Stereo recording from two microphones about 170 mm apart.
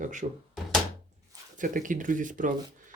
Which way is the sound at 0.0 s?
45° right (ahead or behind).